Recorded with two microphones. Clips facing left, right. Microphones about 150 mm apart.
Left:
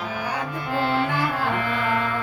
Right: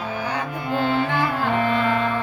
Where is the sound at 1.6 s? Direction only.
25° right (ahead or behind).